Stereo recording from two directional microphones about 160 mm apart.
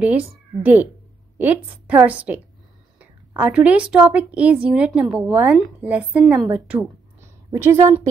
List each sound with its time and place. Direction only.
0.0 s a woman's voice: 10° right (ahead or behind)